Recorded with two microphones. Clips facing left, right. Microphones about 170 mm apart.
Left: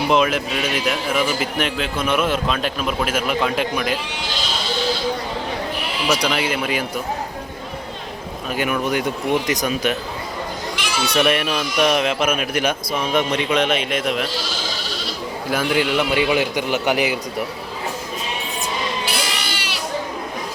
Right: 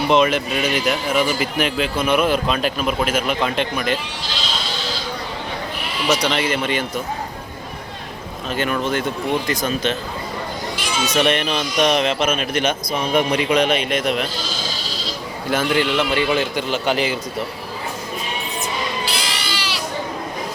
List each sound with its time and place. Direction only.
0.1 s speech: 5° left (ahead or behind)
6.1 s a man's voice: 10° left (ahead or behind)
8.4 s a man's voice: 10° left (ahead or behind)
10.8 s a sound: 65° left (ahead or behind)
11.2 s speech: 5° left (ahead or behind)
15.4 s a man's voice: 5° left (ahead or behind)
19.0 s sheep: 55° left (ahead or behind)